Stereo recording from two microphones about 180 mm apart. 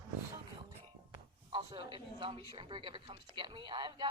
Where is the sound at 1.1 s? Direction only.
25° right (ahead or behind).